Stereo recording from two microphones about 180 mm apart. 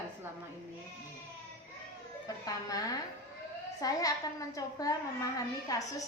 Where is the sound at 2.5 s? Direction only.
20° left (ahead or behind).